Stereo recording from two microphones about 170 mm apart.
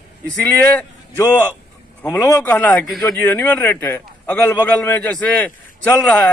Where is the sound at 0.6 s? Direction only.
10° left (ahead or behind).